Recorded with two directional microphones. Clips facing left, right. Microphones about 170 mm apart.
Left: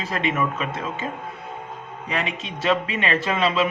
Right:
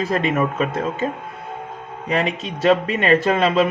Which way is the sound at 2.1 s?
35° right (ahead or behind).